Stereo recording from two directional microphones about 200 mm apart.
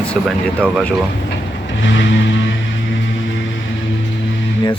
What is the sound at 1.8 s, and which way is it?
Vehicle, 65° left (ahead or behind).